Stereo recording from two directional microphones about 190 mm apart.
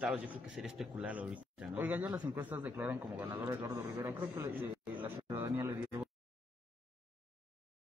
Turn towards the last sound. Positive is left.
turn(degrees=-10)  # may be behind; listen again after turning